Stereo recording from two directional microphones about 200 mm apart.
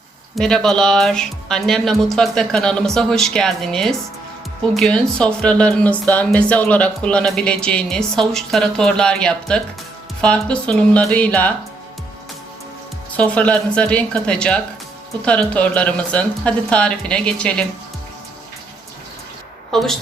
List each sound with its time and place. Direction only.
0.3 s speech: 5° left (ahead or behind)
13.1 s speech: 5° left (ahead or behind)
19.7 s speech: centre (ahead or behind)